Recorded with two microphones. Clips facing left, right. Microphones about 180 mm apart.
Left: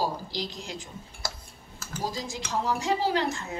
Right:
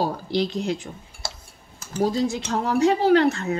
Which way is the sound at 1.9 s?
65° right (ahead or behind).